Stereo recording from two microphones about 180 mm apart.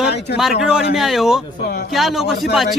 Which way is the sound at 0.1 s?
70° left (ahead or behind).